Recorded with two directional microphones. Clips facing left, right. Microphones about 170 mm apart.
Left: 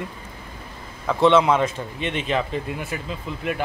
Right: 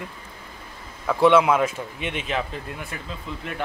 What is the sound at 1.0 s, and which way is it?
Speech, 5° right (ahead or behind).